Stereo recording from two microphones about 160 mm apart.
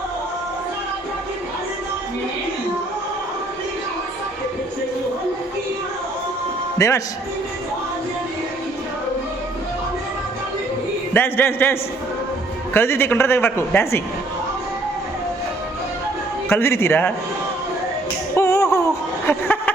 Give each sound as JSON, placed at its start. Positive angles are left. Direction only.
{"t": 6.7, "sound": "speech", "side_deg": 20}
{"t": 11.1, "sound": "a man's voice", "side_deg": 10}
{"t": 16.5, "sound": "a man's voice", "side_deg": 15}
{"t": 18.3, "sound": "a sound", "side_deg": 15}